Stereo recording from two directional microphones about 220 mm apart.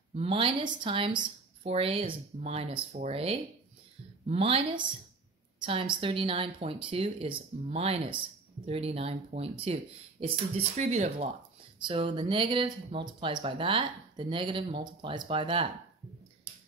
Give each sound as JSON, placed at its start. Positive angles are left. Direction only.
{"t": 0.1, "sound": "a woman's voice", "side_deg": -25}
{"t": 10.8, "sound": "a woman's voice", "side_deg": -30}